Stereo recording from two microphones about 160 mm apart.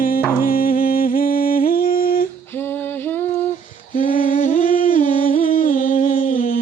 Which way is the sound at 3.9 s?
65° left (ahead or behind).